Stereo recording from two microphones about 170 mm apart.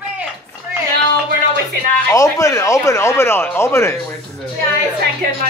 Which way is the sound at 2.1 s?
20° left (ahead or behind).